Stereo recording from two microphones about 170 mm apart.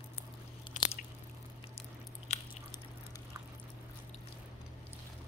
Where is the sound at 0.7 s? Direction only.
45° left (ahead or behind).